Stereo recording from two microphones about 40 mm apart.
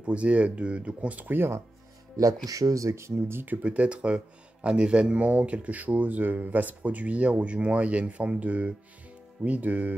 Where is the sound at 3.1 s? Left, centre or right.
Right.